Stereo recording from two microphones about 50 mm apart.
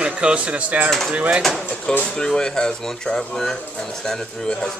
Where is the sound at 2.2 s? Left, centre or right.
Centre.